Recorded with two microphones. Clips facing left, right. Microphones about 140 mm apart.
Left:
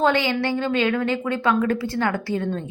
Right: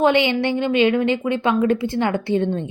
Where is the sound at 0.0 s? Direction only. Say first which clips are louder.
Right 3 dB; 20° right (ahead or behind).